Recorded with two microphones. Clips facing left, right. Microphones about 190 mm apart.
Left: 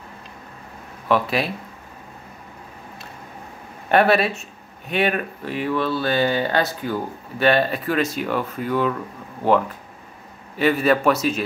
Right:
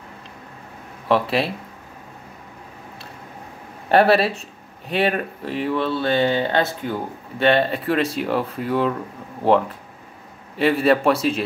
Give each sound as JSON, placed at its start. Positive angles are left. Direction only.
{"t": 1.0, "sound": "speech", "side_deg": -30}
{"t": 3.9, "sound": "speech", "side_deg": -30}